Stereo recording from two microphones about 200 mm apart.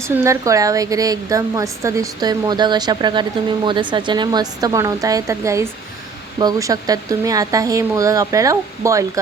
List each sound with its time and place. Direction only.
0.1 s a woman's voice: 15° right (ahead or behind)